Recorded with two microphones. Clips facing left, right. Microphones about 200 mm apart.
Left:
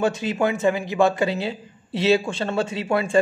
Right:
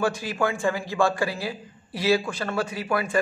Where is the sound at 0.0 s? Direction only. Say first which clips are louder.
Left 3 dB; 20° left (ahead or behind).